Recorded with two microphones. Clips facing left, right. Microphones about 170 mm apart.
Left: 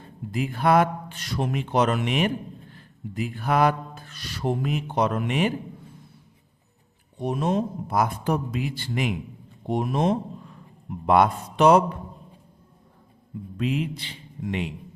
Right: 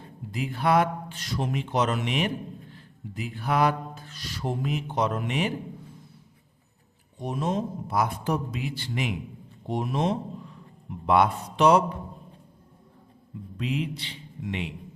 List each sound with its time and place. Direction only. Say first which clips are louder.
0.3 s a man's voice: left 3 dB; 50° left (ahead or behind)
7.2 s a man's voice: left 4 dB; 60° left (ahead or behind)
13.6 s speech: left 3 dB; 50° left (ahead or behind)